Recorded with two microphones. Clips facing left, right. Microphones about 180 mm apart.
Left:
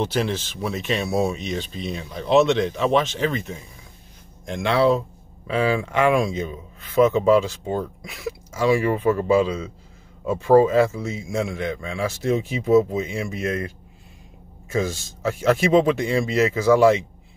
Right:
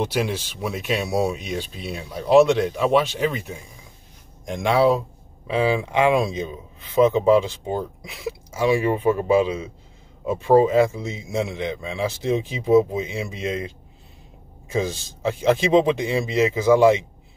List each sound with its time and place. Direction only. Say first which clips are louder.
0.0 s speech: even; 15° right (ahead or behind)
4.6 s speech: right 1 dB; 10° right (ahead or behind)